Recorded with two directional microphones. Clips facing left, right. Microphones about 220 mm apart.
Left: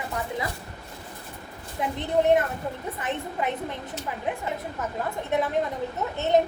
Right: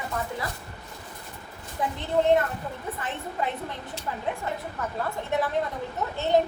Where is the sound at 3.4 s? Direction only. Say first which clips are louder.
Left 1 dB; 20° left (ahead or behind).